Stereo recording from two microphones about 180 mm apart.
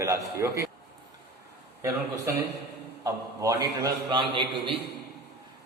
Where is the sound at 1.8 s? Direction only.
15° right (ahead or behind).